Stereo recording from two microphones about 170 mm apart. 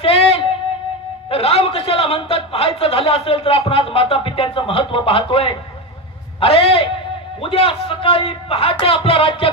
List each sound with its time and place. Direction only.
0.0 s music: 35° left (ahead or behind)
1.3 s a man's voice: 35° left (ahead or behind)